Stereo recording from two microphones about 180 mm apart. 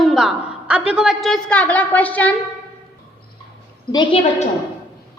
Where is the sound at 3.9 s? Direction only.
25° left (ahead or behind).